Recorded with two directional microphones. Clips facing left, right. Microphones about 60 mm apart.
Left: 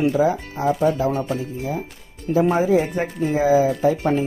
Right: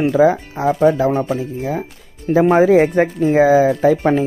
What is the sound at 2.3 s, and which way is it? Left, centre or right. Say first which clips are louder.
Speech: right 6 dB; right.